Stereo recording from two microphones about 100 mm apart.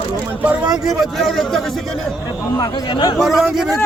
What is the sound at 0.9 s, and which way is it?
A man's voice, centre (ahead or behind).